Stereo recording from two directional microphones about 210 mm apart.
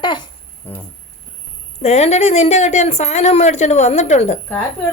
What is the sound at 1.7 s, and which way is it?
A woman's voice, 30° left (ahead or behind).